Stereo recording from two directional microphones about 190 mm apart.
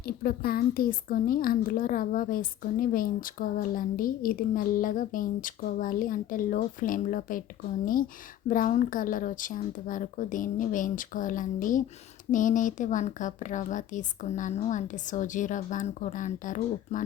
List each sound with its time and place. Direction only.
0.2 s a woman's voice: 50° left (ahead or behind)
8.4 s a woman's voice: 45° left (ahead or behind)